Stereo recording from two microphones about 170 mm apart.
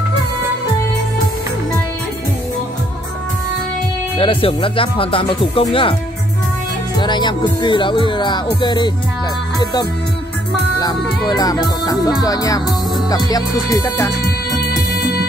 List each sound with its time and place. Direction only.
4.2 s speech: 30° left (ahead or behind)
7.0 s speech: 25° left (ahead or behind)
10.8 s speech: 25° left (ahead or behind)